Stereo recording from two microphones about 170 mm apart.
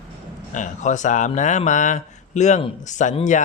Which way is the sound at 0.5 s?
45° left (ahead or behind).